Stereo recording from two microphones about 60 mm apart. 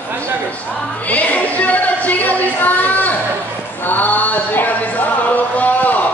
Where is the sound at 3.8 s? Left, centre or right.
Left.